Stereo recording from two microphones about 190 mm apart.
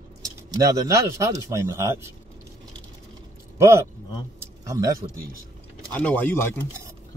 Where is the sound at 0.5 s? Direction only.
20° right (ahead or behind).